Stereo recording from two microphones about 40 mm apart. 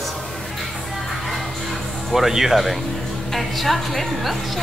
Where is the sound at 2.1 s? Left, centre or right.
Centre.